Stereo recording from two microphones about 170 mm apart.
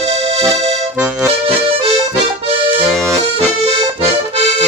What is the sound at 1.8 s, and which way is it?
Accordion, 35° right (ahead or behind).